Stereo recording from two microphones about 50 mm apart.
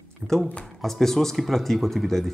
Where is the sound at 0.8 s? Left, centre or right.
Centre.